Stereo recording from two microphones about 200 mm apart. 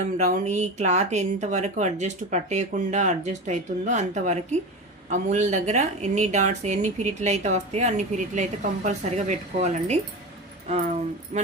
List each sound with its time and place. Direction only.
0.2 s a woman's voice: 40° right (ahead or behind)